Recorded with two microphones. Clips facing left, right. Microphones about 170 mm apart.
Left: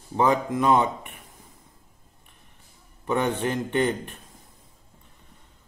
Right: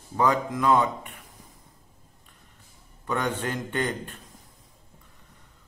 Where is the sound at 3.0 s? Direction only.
20° left (ahead or behind).